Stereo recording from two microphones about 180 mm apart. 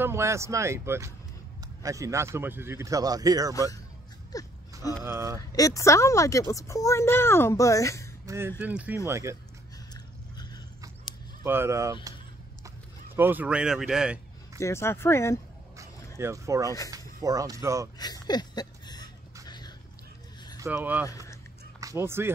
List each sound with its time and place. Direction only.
0.0 s a man's voice: 15° right (ahead or behind)
4.3 s wheeze: 20° left (ahead or behind)
5.0 s a man's voice: 15° right (ahead or behind)
5.5 s a woman's voice: 20° left (ahead or behind)
8.3 s a man's voice: 15° right (ahead or behind)
11.4 s a man's voice: 15° right (ahead or behind)
14.6 s a woman's voice: 15° left (ahead or behind)
16.2 s a man's voice: 15° right (ahead or behind)
17.9 s a sound: 20° left (ahead or behind)
19.4 s dog: 20° left (ahead or behind)
20.6 s a man's voice: 10° right (ahead or behind)